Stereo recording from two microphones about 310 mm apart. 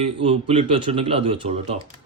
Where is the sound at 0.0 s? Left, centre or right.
Centre.